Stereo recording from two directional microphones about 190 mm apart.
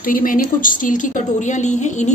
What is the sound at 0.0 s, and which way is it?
A woman's voice, 45° left (ahead or behind).